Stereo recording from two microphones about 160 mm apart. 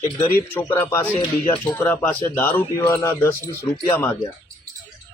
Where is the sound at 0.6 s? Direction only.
15° left (ahead or behind).